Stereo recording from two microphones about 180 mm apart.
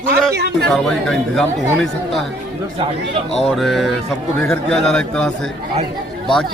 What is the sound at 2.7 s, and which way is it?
Speech, 30° right (ahead or behind).